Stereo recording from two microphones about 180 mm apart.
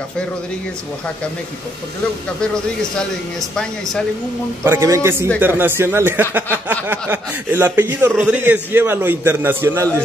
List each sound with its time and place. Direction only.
2.4 s speech: 5° left (ahead or behind)
4.6 s a man's voice: 15° right (ahead or behind)